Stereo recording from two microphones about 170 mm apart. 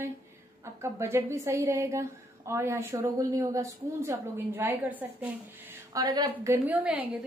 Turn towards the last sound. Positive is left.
turn(degrees=-10)  # may be behind; listen again after turning